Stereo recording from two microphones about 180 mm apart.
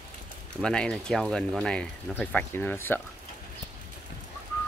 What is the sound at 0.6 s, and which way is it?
Speech, 5° left (ahead or behind).